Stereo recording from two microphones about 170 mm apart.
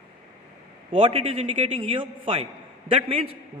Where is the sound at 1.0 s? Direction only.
35° right (ahead or behind).